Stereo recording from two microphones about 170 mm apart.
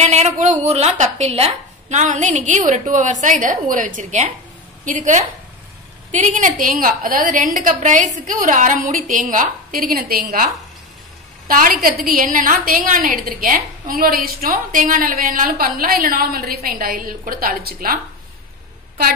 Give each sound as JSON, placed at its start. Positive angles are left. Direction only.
{"t": 0.0, "sound": "a woman's voice", "side_deg": -45}